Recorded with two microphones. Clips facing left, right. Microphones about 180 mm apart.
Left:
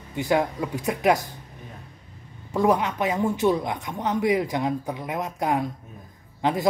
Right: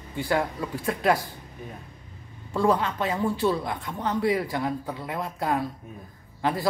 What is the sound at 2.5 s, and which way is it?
A woman's voice, 15° left (ahead or behind).